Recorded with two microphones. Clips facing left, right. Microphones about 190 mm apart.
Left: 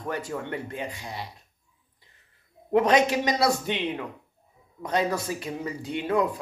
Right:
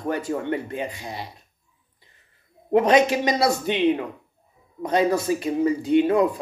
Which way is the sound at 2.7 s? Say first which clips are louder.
Right 3 dB; 25° right (ahead or behind).